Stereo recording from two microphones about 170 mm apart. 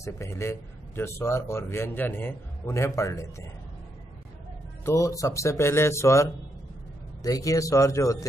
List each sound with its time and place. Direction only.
0.0 s a man's voice: 15° left (ahead or behind)
4.8 s a man's voice: 20° left (ahead or behind)
7.2 s speech: 20° left (ahead or behind)